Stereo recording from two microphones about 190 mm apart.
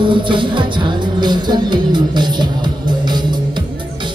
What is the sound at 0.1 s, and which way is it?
Music, 25° right (ahead or behind).